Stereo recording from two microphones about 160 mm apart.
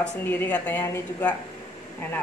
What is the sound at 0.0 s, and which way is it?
A woman's voice, 10° left (ahead or behind).